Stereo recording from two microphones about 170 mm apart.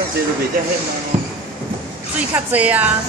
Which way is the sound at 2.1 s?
10° right (ahead or behind).